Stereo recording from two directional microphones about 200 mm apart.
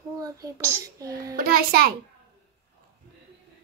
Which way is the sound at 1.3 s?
45° right (ahead or behind).